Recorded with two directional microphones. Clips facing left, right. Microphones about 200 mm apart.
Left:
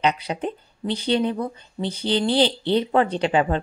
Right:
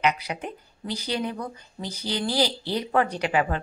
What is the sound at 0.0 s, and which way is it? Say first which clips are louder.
Speech: left 3 dB; 30° left (ahead or behind).